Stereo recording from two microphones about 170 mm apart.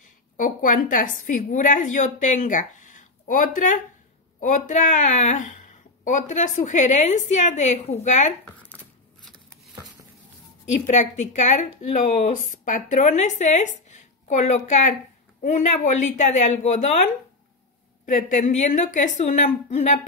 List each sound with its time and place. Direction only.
0.0 s a woman's voice: 50° left (ahead or behind)
8.5 s a sound: 10° left (ahead or behind)
10.7 s speech: 45° left (ahead or behind)